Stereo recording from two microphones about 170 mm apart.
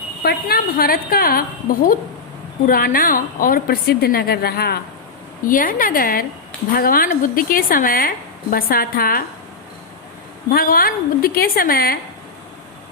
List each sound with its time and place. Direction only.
0.2 s a woman's voice: 65° left (ahead or behind)
2.6 s a woman's voice: 60° left (ahead or behind)
5.5 s a woman's voice: 55° left (ahead or behind)
10.5 s a woman's voice: 60° left (ahead or behind)